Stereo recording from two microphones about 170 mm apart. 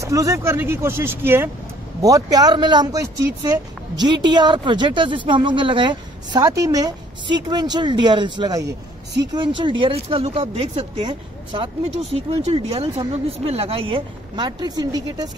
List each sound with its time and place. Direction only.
0.0 s speech: 20° right (ahead or behind)
8.6 s speech: 85° right
9.6 s speech: 30° right (ahead or behind)